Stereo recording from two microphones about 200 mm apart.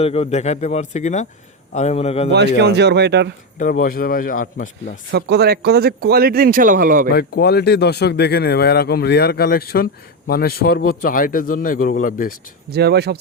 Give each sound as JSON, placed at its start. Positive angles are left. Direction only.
{"t": 0.0, "sound": "speech", "side_deg": 30}
{"t": 2.6, "sound": "speech", "side_deg": -60}
{"t": 3.6, "sound": "speech", "side_deg": 45}
{"t": 5.1, "sound": "speech", "side_deg": -55}
{"t": 7.1, "sound": "speech", "side_deg": 55}
{"t": 12.7, "sound": "speech", "side_deg": -55}